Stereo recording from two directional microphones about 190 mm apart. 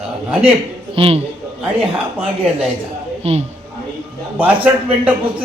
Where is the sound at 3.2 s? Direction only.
30° right (ahead or behind).